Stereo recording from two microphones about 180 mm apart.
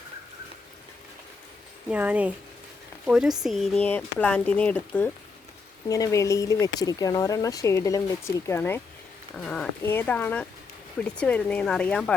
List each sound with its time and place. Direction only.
1.9 s speech: 10° right (ahead or behind)